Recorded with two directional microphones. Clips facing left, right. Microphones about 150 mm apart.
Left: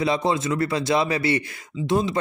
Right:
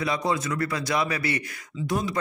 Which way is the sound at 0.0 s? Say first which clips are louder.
Left 4 dB; 25° left (ahead or behind).